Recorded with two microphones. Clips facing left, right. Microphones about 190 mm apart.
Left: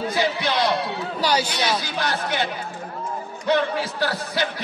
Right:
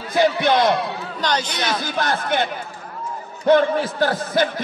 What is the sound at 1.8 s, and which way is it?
A man's voice, 55° right (ahead or behind).